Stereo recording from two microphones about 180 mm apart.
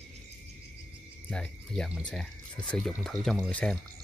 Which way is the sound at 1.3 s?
5° left (ahead or behind).